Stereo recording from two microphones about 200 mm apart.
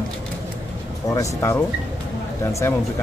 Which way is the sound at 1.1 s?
15° left (ahead or behind).